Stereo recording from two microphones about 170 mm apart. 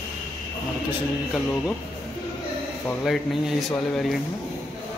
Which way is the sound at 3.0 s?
Centre (ahead or behind).